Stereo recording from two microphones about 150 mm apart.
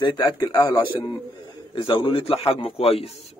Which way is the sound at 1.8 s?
35° left (ahead or behind).